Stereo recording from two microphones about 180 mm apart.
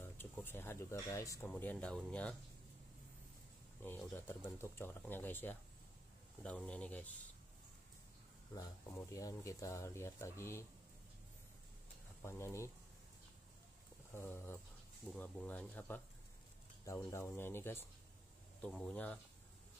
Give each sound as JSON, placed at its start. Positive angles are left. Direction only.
{"t": 0.0, "sound": "speech", "side_deg": 10}
{"t": 3.8, "sound": "speech", "side_deg": 10}
{"t": 8.5, "sound": "speech", "side_deg": 20}
{"t": 12.2, "sound": "speech", "side_deg": 15}
{"t": 14.1, "sound": "speech", "side_deg": 15}